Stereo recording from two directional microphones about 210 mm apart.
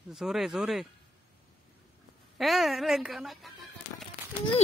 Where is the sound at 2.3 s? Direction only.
Centre (ahead or behind).